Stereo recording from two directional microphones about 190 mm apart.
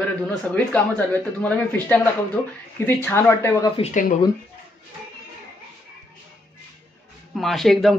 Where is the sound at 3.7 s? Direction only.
35° left (ahead or behind).